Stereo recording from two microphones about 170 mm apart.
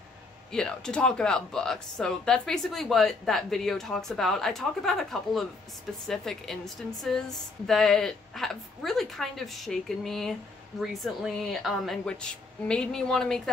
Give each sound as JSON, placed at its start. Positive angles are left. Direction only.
{"t": 0.5, "sound": "speech", "side_deg": 5}